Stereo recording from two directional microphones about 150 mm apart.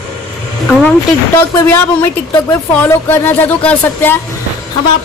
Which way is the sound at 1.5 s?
15° left (ahead or behind).